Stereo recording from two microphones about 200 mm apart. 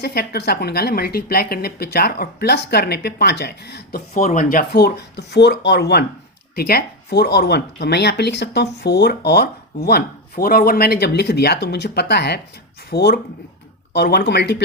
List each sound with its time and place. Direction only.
0.0 s a woman's voice: 55° left (ahead or behind)
4.2 s a woman's voice: 40° left (ahead or behind); by 14.6 s 55° left (ahead or behind)